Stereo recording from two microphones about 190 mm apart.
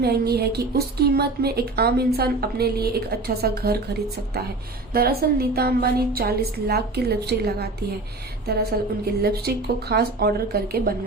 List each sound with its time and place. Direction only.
0.0 s a woman's voice: 55° right (ahead or behind)
4.9 s a woman's voice: 55° right (ahead or behind)
9.2 s a woman's voice: 55° right (ahead or behind)